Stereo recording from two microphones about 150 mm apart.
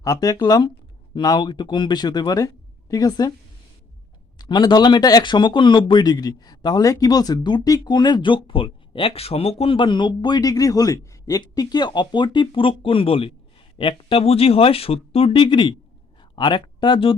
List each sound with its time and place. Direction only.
0.0 s speech: 20° left (ahead or behind)
4.4 s speech: 30° left (ahead or behind)